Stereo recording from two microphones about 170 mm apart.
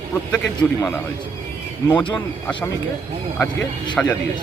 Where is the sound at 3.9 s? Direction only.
5° left (ahead or behind).